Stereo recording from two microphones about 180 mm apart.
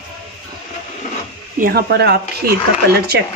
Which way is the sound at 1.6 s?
60° right (ahead or behind).